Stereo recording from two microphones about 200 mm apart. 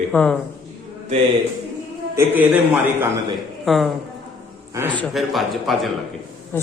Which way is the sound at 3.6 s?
Centre (ahead or behind).